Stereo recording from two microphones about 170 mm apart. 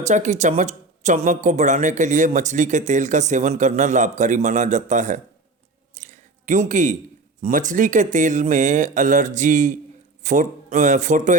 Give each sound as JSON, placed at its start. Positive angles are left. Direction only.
{"t": 0.0, "sound": "speech", "side_deg": -45}
{"t": 5.9, "sound": "chewing", "side_deg": -45}
{"t": 7.4, "sound": "speech", "side_deg": -50}